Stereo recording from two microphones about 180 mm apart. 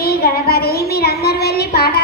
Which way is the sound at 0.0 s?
60° left (ahead or behind).